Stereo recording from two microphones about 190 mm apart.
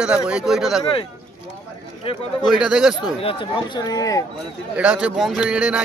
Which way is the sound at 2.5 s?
5° right (ahead or behind).